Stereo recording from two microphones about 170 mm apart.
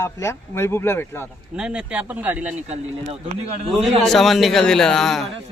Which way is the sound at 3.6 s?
35° right (ahead or behind).